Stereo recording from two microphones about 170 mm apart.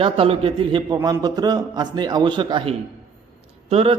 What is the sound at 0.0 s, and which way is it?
Speech, 35° right (ahead or behind).